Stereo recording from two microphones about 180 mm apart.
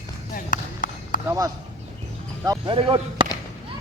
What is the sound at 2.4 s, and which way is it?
Speech, 25° right (ahead or behind).